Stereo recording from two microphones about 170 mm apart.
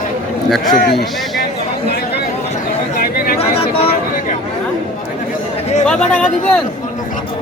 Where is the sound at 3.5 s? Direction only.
35° left (ahead or behind).